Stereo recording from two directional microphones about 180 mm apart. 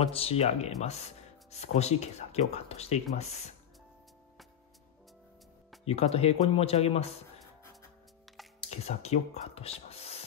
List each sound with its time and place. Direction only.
0.0 s speech: 35° left (ahead or behind)
5.9 s speech: 35° left (ahead or behind)
8.6 s speech: 35° left (ahead or behind)